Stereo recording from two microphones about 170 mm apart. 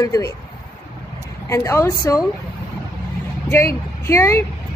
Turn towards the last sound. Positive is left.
turn(degrees=15)  # may be behind; listen again after turning